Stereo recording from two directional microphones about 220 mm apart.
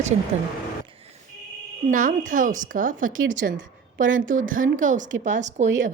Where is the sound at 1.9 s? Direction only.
35° right (ahead or behind).